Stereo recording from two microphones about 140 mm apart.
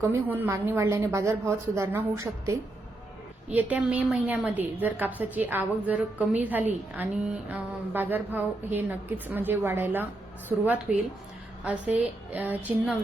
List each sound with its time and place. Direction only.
0.0 s a woman's voice: 15° right (ahead or behind)
10.5 s a woman's voice: 5° right (ahead or behind)
12.3 s a woman's voice: 10° right (ahead or behind)